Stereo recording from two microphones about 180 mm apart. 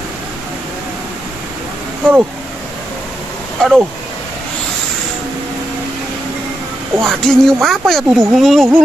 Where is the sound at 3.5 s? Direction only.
Centre (ahead or behind).